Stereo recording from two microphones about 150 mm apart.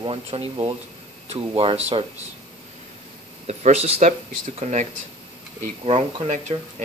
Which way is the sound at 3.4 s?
45° right (ahead or behind).